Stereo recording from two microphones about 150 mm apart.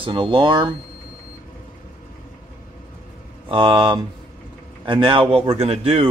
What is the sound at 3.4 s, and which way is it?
Speech, 35° right (ahead or behind).